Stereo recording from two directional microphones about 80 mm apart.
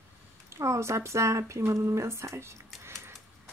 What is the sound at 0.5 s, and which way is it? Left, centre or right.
Speech, right.